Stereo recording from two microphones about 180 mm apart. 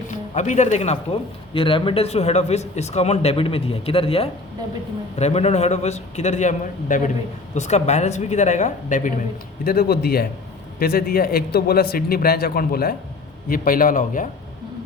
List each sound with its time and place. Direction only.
0.3 s speech: 40° left (ahead or behind)
9.6 s a man's voice: 60° left (ahead or behind)